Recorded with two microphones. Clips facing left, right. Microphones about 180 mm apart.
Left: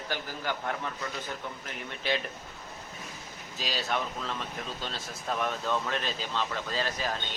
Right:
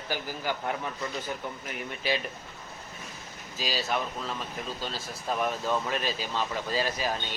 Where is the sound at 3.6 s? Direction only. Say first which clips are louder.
Right 2 dB; 5° right (ahead or behind).